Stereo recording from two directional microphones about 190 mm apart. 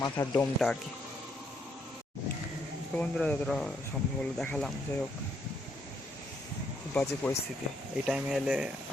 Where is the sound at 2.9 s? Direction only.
5° left (ahead or behind).